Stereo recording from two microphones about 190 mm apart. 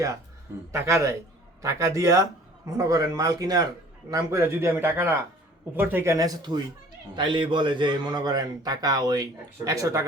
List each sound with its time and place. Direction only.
0.7 s a man's voice: 15° right (ahead or behind)